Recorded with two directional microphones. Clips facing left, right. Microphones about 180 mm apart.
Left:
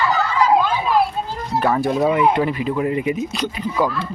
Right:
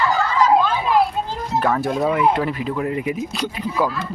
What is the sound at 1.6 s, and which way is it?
Speech, 5° left (ahead or behind).